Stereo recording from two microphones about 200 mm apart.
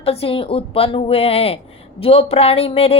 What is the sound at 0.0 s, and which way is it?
A woman's voice, 30° left (ahead or behind).